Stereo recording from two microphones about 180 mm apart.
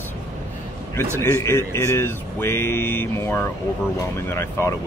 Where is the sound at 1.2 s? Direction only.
15° left (ahead or behind).